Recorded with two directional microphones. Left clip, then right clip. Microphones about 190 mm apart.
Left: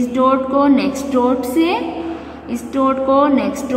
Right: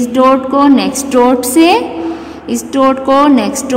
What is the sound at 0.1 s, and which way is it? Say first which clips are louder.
A woman's voice: right 6 dB; 40° right (ahead or behind).